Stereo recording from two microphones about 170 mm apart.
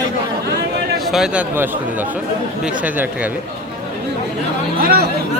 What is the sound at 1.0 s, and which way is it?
Speech, centre (ahead or behind).